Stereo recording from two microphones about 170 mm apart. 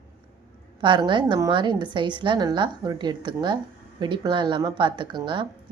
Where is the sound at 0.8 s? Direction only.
25° right (ahead or behind).